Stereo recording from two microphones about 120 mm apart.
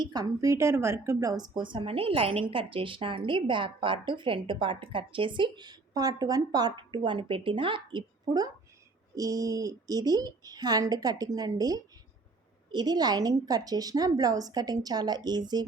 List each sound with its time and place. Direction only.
0.0 s a woman's voice: 35° right (ahead or behind)